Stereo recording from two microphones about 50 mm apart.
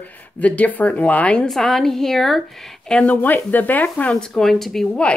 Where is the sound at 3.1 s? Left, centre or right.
Left.